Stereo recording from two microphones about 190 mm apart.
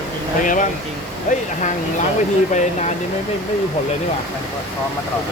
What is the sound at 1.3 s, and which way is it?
Speech, 40° left (ahead or behind).